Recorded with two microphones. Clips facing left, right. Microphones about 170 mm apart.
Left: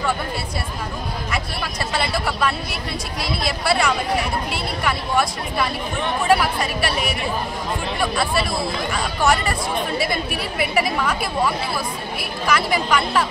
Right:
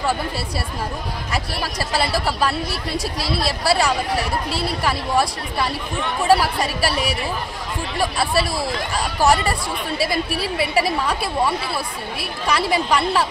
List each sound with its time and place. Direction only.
1.3 s speech: 35° right (ahead or behind)